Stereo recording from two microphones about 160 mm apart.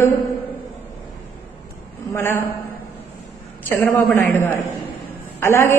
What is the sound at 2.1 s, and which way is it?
Speech, 15° left (ahead or behind).